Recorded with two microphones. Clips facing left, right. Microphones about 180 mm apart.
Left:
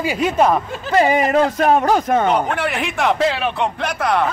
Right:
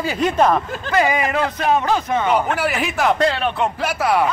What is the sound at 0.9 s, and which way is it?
Speech, 35° left (ahead or behind).